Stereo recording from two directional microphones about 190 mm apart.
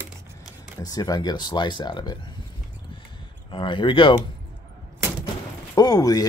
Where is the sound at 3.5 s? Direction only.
25° left (ahead or behind).